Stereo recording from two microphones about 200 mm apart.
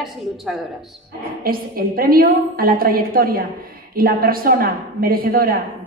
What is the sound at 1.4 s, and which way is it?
A woman's voice, 45° right (ahead or behind).